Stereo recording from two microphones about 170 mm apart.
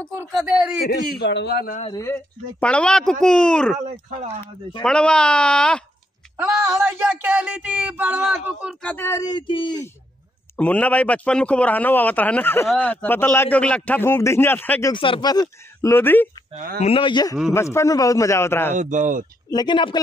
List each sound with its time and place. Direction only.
0.2 s speech: 5° right (ahead or behind)
0.8 s a man's voice: 75° left (ahead or behind)
1.9 s speech: 20° left (ahead or behind)
2.1 s speech: 5° left (ahead or behind)
3.8 s speech: 45° right (ahead or behind)
4.8 s speech: 5° left (ahead or behind)
6.3 s a sound: 15° right (ahead or behind)
8.8 s speech: 15° left (ahead or behind)
10.5 s speech: 10° left (ahead or behind)
14.9 s speech: 30° left (ahead or behind); by 16.3 s 10° left (ahead or behind)
16.5 s speech: 60° right (ahead or behind)
16.8 s speech: 30° left (ahead or behind); by 18.8 s 15° left (ahead or behind)
18.8 s speech: 45° right (ahead or behind)
19.5 s speech: 25° left (ahead or behind)